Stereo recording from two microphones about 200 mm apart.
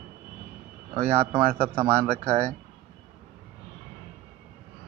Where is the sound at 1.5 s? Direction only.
15° right (ahead or behind).